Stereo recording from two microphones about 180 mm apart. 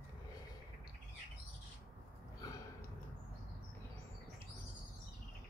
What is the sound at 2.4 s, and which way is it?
Sniff, 20° left (ahead or behind).